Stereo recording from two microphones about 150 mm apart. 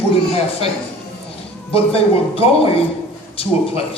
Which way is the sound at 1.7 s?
40° left (ahead or behind).